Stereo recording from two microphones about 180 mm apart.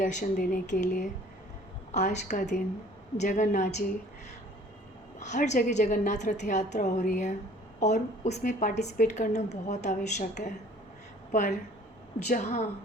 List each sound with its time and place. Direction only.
0.0 s a woman's voice: 45° left (ahead or behind)
5.2 s a woman's voice: 40° left (ahead or behind)